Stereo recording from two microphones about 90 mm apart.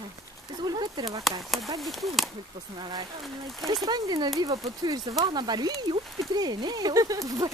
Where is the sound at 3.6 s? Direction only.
45° right (ahead or behind).